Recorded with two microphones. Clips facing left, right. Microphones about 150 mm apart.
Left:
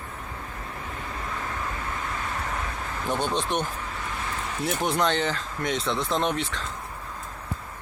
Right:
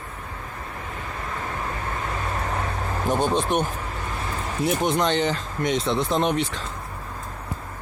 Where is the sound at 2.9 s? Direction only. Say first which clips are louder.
Right 5 dB; 40° right (ahead or behind).